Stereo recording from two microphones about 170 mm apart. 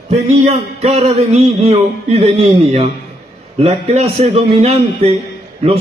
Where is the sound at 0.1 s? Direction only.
40° right (ahead or behind).